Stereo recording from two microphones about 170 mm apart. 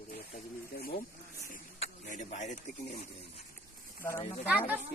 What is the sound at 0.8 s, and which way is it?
Speech, 60° left (ahead or behind).